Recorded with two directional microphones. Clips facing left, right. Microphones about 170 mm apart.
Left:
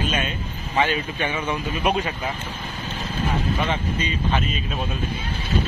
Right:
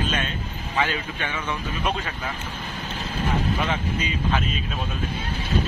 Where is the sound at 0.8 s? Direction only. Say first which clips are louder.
Left 4 dB; 15° left (ahead or behind).